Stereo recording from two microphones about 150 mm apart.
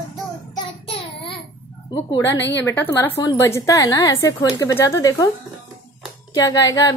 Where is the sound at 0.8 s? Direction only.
40° left (ahead or behind).